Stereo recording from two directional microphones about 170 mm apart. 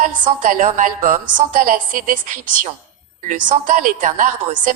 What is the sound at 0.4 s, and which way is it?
A woman's voice, 50° right (ahead or behind).